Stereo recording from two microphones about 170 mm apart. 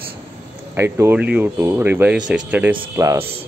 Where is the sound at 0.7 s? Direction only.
15° right (ahead or behind).